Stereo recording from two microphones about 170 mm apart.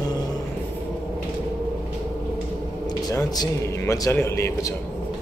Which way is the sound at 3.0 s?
20° left (ahead or behind).